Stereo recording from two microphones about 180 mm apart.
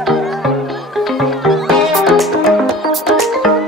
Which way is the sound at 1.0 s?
Centre (ahead or behind).